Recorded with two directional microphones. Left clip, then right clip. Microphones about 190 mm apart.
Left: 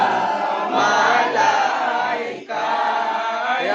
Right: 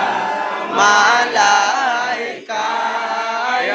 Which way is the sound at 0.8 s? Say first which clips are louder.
Right 5 dB; 45° right (ahead or behind).